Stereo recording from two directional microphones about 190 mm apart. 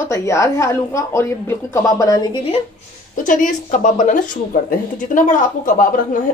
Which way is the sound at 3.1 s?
45° left (ahead or behind).